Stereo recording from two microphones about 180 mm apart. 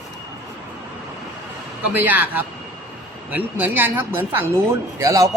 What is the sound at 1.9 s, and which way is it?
Speech, 10° right (ahead or behind).